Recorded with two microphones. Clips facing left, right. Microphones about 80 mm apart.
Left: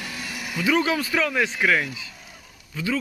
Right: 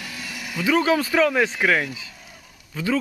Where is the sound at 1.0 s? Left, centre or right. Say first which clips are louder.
Right 5 dB; right.